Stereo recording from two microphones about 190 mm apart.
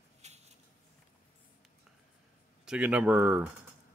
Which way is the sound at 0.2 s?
35° right (ahead or behind).